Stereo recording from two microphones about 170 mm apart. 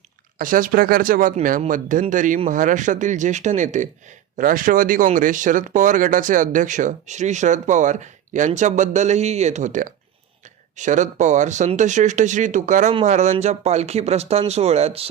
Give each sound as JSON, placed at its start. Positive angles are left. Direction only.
{"t": 0.3, "sound": "speech", "side_deg": -55}